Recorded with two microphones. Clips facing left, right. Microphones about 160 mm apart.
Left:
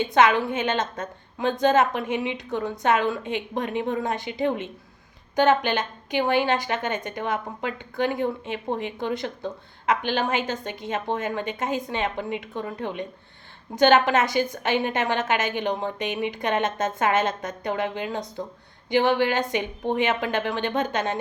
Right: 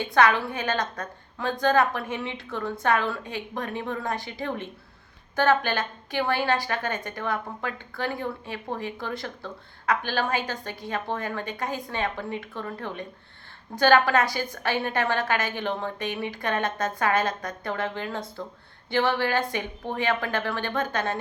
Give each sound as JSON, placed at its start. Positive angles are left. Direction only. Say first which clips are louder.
{"t": 0.0, "sound": "a woman's voice", "louder": "left 2 dB", "side_deg": 20}